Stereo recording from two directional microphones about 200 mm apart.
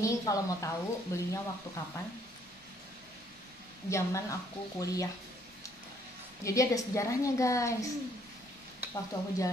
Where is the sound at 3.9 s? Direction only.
15° left (ahead or behind).